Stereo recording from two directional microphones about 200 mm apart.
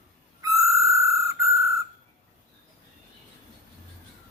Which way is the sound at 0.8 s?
15° right (ahead or behind).